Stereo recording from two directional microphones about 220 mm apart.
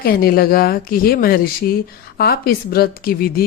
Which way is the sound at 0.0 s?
40° left (ahead or behind).